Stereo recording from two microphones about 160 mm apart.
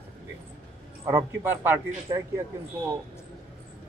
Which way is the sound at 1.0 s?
15° right (ahead or behind).